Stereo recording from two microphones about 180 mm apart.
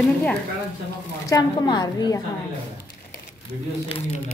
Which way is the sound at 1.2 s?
20° left (ahead or behind).